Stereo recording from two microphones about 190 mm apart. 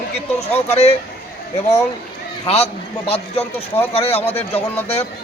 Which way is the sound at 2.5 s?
35° left (ahead or behind).